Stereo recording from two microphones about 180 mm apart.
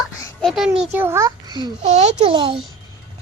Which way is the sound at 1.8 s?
40° right (ahead or behind).